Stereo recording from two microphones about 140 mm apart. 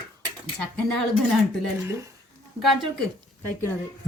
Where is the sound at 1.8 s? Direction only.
20° right (ahead or behind).